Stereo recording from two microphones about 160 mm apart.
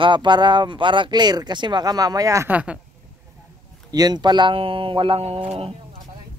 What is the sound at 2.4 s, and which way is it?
Speech, 10° right (ahead or behind).